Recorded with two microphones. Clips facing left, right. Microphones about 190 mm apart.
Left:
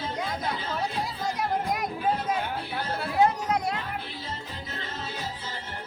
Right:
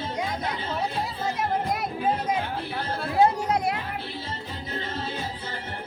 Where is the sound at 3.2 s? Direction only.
30° right (ahead or behind).